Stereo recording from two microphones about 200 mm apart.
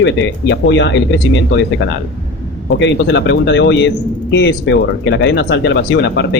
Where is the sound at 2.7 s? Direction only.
60° left (ahead or behind).